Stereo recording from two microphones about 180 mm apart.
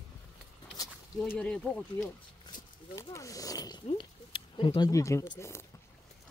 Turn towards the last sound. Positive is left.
turn(degrees=15)  # may be behind; listen again after turning